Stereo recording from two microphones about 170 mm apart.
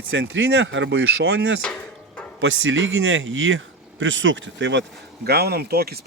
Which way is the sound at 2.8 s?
90° right.